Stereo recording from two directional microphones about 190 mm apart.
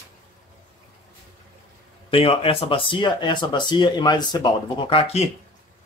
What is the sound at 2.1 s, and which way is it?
Speech, 30° left (ahead or behind).